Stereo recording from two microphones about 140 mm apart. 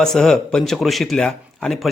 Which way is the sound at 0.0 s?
5° left (ahead or behind).